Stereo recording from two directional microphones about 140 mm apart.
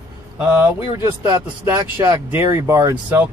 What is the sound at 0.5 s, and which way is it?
Speech, 15° right (ahead or behind).